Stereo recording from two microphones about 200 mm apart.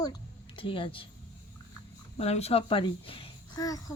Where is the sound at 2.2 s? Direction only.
30° left (ahead or behind).